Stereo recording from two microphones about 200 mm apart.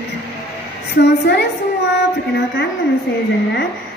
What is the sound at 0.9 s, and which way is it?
A woman's voice, 55° left (ahead or behind).